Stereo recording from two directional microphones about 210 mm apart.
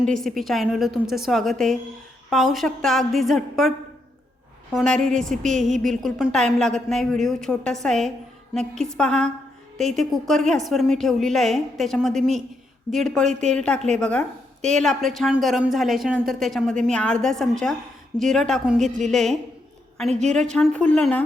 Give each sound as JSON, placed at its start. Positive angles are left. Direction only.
{"t": 0.2, "sound": "speech", "side_deg": 0}
{"t": 4.7, "sound": "speech", "side_deg": 0}
{"t": 18.8, "sound": "a woman's voice", "side_deg": -35}
{"t": 19.1, "sound": "speech", "side_deg": 0}
{"t": 20.1, "sound": "a woman's voice", "side_deg": -35}
{"t": 20.3, "sound": "speech", "side_deg": 5}